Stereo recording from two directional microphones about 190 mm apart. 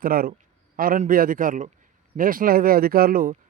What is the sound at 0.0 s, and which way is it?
Speech, 50° right (ahead or behind).